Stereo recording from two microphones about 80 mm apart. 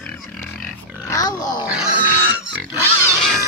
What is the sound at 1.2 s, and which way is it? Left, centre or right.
Dog, left.